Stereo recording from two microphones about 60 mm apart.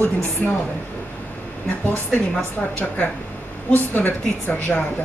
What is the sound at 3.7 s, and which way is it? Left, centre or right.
A woman's voice, left.